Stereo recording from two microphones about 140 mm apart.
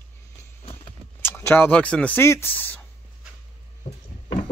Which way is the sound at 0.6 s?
45° left (ahead or behind).